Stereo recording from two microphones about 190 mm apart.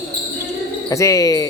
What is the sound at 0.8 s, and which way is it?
Speech, 15° left (ahead or behind).